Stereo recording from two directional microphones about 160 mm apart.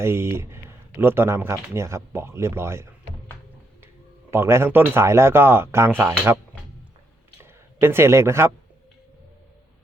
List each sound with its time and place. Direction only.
0.0 s speech: 15° right (ahead or behind)
4.3 s speech: 15° right (ahead or behind)
7.4 s speech: 15° right (ahead or behind)